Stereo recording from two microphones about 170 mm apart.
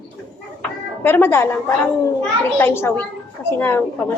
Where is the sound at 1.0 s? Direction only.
10° left (ahead or behind).